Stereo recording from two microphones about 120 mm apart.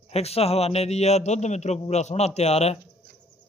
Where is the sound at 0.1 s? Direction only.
60° left (ahead or behind).